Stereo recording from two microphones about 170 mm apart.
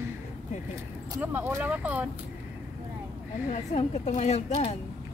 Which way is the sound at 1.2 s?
10° right (ahead or behind).